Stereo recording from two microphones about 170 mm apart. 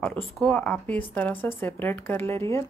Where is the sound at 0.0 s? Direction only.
10° left (ahead or behind).